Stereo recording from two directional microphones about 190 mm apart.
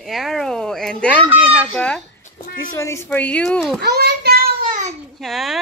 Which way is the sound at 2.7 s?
15° left (ahead or behind).